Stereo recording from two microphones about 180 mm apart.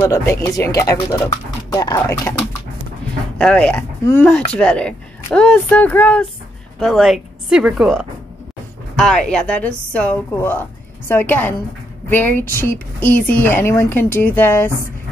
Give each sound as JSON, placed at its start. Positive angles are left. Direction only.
{"t": 0.0, "sound": "speech", "side_deg": 15}
{"t": 3.3, "sound": "speech", "side_deg": 5}